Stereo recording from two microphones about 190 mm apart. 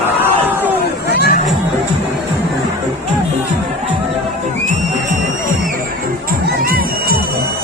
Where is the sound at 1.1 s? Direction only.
60° left (ahead or behind).